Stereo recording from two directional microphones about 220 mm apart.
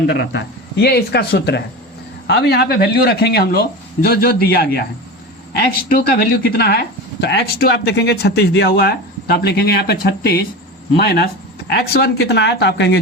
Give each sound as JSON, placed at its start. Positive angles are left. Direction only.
{"t": 0.1, "sound": "speech", "side_deg": 50}